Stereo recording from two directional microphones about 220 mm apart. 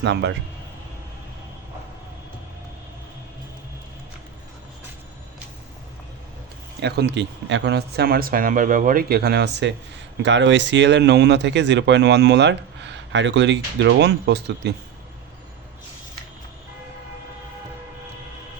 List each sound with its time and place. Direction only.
0.0 s speech: 50° right (ahead or behind)
6.7 s speech: 50° right (ahead or behind)